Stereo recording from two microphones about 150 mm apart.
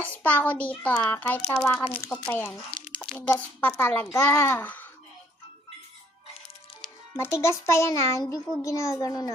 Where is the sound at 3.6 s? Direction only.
15° left (ahead or behind).